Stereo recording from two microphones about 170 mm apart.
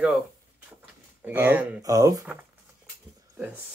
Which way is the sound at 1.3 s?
10° right (ahead or behind).